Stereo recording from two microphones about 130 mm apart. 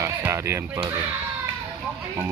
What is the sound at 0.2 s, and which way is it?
Speech, 20° right (ahead or behind).